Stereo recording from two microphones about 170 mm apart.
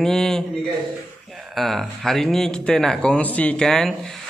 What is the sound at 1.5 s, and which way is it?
Speech, centre (ahead or behind).